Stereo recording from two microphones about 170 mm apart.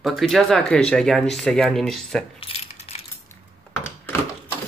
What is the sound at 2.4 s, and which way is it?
Coin, 35° left (ahead or behind).